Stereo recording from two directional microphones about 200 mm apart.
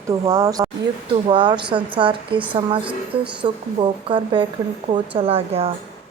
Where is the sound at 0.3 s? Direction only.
20° right (ahead or behind).